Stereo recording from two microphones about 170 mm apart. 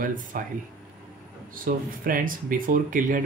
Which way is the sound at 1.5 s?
55° right (ahead or behind).